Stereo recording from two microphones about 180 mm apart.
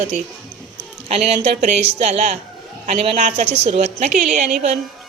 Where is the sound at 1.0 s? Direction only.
40° right (ahead or behind).